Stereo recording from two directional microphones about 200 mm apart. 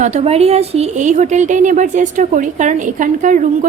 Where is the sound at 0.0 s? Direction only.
35° right (ahead or behind).